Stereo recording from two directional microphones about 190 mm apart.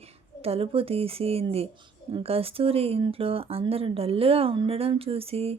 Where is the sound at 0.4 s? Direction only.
30° right (ahead or behind).